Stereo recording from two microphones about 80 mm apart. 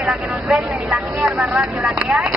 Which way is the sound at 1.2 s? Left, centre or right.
Right.